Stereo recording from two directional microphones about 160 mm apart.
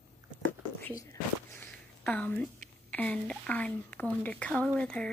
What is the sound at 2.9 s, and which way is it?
A woman's voice, 10° left (ahead or behind).